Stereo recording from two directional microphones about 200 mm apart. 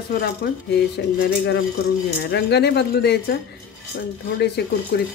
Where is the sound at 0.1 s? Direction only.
50° left (ahead or behind).